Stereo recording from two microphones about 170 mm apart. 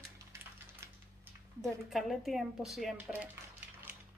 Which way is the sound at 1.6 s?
Centre (ahead or behind).